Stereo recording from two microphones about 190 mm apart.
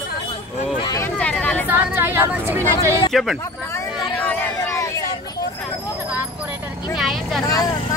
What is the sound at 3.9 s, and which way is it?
Chatter, 5° left (ahead or behind).